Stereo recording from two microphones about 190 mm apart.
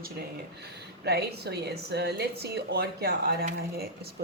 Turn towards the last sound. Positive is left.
turn(degrees=-55)  # may be behind; listen again after turning